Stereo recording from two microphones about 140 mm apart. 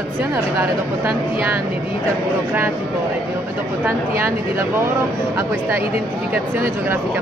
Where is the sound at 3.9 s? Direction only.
20° right (ahead or behind).